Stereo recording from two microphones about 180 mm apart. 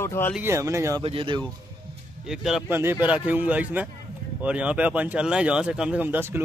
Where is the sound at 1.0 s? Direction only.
30° right (ahead or behind).